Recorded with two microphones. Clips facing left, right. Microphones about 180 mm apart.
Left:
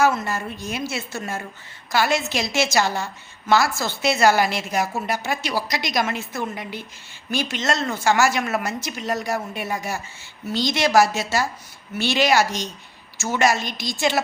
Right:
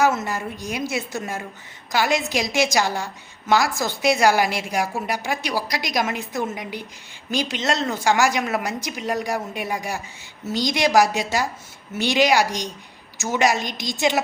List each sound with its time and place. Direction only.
0.0 s a woman's voice: 20° right (ahead or behind)